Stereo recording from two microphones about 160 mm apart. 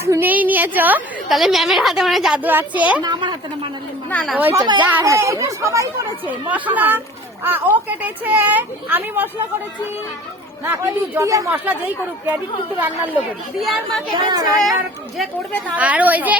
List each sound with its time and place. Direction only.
0.0 s a woman's voice: 15° right (ahead or behind)
3.0 s speech: 30° right (ahead or behind)
4.1 s speech: centre (ahead or behind)
4.4 s a woman's voice: 10° right (ahead or behind)
10.7 s a woman's voice: 15° right (ahead or behind)
13.6 s speech: centre (ahead or behind)
14.3 s speech: 25° right (ahead or behind)
15.7 s a woman's voice: 10° right (ahead or behind)